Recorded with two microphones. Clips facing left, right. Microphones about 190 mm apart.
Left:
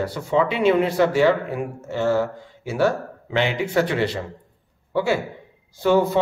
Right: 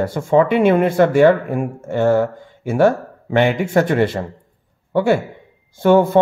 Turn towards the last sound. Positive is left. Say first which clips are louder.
# right 5 dB
turn(degrees=-50)  # may be behind; listen again after turning